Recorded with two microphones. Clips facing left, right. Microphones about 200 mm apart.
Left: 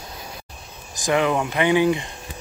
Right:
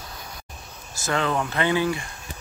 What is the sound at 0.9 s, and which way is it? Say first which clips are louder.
Speech: left 5 dB; 15° left (ahead or behind).